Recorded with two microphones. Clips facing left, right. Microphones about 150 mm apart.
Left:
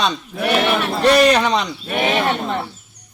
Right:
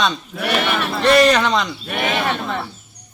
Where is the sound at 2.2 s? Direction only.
25° left (ahead or behind).